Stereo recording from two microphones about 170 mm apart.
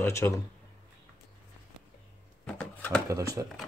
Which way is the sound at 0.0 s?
15° left (ahead or behind).